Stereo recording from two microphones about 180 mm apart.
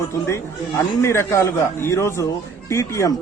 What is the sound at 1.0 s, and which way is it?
A man's voice, 15° left (ahead or behind).